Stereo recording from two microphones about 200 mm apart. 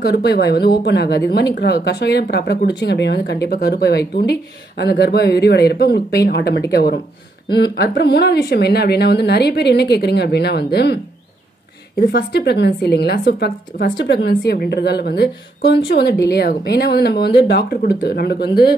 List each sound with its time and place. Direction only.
0.0 s a woman's voice: 55° left (ahead or behind)
12.0 s a woman's voice: 55° left (ahead or behind)